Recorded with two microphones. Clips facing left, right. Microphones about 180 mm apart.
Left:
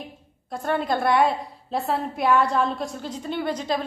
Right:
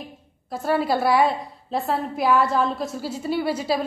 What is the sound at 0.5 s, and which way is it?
A woman's voice, 5° right (ahead or behind).